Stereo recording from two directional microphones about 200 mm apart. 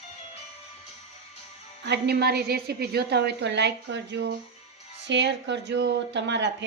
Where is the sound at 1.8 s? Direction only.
55° right (ahead or behind).